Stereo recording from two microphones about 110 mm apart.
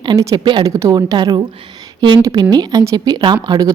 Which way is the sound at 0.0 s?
40° right (ahead or behind).